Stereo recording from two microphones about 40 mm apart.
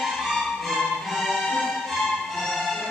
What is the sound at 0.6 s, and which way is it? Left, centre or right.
Music, centre.